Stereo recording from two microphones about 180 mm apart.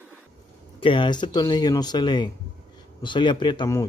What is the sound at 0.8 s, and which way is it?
Speech, 25° left (ahead or behind).